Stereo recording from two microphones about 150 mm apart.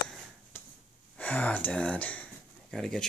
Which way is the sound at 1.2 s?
10° left (ahead or behind).